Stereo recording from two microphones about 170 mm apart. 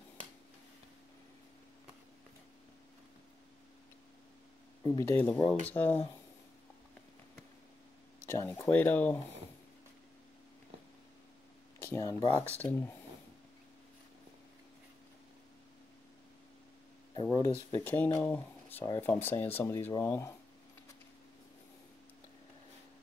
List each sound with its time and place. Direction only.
4.8 s speech: 15° left (ahead or behind)
8.3 s speech: 15° left (ahead or behind)
11.8 s speech: 15° left (ahead or behind)
17.1 s a sound: 25° left (ahead or behind)
17.8 s speech: 10° left (ahead or behind)